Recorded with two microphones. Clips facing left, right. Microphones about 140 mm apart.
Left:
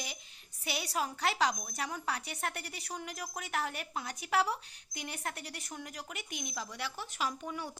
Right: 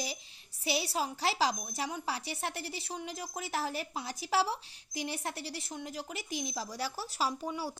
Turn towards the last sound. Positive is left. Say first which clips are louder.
# right 3 dB
turn(degrees=-30)  # may be behind; listen again after turning